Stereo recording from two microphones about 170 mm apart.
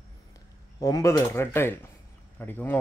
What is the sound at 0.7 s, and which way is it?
Speech, 20° left (ahead or behind).